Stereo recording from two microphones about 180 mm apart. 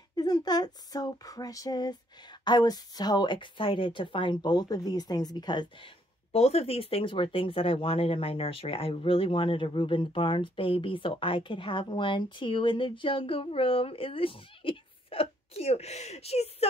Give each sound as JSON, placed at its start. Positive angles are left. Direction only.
{"t": 0.1, "sound": "speech", "side_deg": 20}
{"t": 6.3, "sound": "speech", "side_deg": 35}